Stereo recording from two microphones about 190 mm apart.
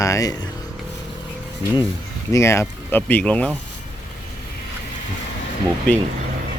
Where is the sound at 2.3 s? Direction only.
15° left (ahead or behind).